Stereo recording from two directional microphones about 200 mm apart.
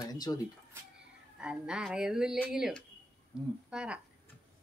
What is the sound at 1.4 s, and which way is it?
Speech, 5° right (ahead or behind).